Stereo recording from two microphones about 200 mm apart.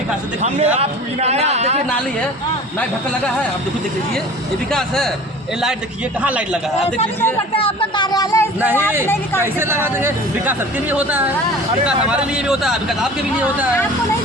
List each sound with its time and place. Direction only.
0.4 s a man's voice: 30° right (ahead or behind)
4.7 s speech: centre (ahead or behind)
6.2 s speech: 5° right (ahead or behind)
7.5 s speech: 25° left (ahead or behind)
9.4 s speech: 10° right (ahead or behind)